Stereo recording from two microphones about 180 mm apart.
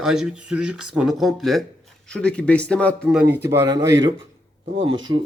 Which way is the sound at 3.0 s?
10° right (ahead or behind).